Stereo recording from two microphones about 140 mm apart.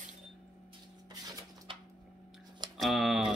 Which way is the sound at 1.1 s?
30° right (ahead or behind).